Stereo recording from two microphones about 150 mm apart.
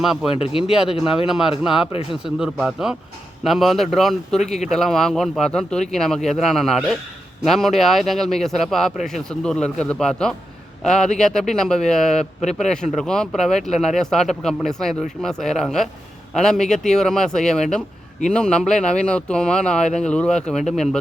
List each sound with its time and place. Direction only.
0.0 s speech: 5° right (ahead or behind)
0.3 s speech: 40° left (ahead or behind)
1.3 s speech: 5° right (ahead or behind)